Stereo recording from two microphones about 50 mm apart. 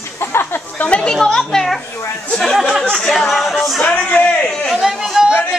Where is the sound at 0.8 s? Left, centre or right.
Left.